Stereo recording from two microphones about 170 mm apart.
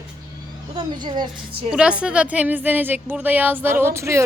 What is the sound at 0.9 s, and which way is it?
Speech, 25° right (ahead or behind).